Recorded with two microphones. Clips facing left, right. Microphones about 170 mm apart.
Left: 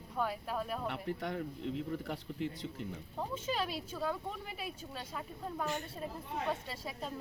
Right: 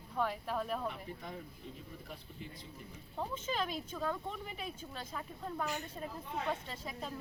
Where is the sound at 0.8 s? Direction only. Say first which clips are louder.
Left 4 dB; 80° left.